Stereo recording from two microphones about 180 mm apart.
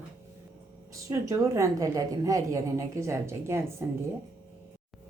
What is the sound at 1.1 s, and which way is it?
Speech, 15° right (ahead or behind).